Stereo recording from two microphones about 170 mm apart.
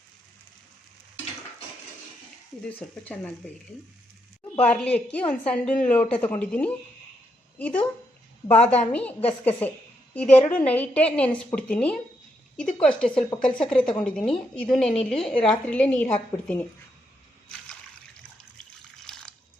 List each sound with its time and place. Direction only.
2.6 s a woman's voice: 10° left (ahead or behind)
4.5 s a woman's voice: 10° left (ahead or behind)
8.9 s a woman's voice: 10° left (ahead or behind)
10.3 s a woman's voice: 45° left (ahead or behind)
10.7 s a woman's voice: 10° left (ahead or behind)
19.0 s liquid: 5° left (ahead or behind)